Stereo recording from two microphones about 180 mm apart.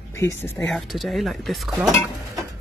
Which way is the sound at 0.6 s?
5° left (ahead or behind).